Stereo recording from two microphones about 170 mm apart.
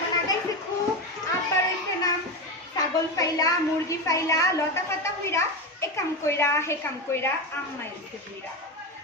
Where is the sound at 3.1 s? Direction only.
20° left (ahead or behind).